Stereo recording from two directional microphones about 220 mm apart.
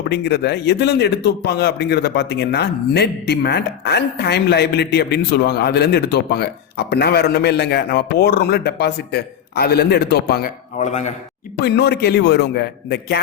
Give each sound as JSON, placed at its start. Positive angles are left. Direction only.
{"t": 0.1, "sound": "a man's voice", "side_deg": 50}
{"t": 11.6, "sound": "a man's voice", "side_deg": 45}